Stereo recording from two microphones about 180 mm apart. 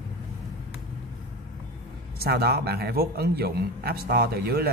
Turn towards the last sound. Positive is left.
turn(degrees=-60)  # may be behind; listen again after turning